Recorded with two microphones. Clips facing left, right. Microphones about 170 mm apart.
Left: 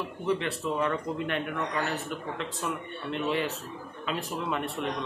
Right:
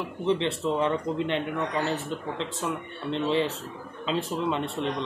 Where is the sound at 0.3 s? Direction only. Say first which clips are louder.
Right 4 dB; 25° right (ahead or behind).